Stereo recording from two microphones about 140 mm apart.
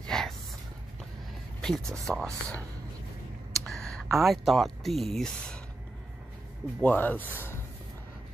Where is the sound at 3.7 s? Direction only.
Centre (ahead or behind).